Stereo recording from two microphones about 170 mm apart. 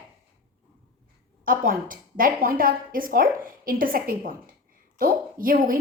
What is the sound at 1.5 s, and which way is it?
A woman's voice, 55° right (ahead or behind).